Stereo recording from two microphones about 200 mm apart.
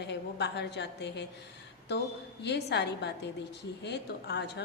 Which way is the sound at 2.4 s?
60° left (ahead or behind).